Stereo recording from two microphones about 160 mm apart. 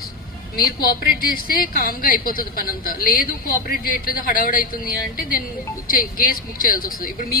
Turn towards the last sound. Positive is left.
turn(degrees=60)  # may be behind; listen again after turning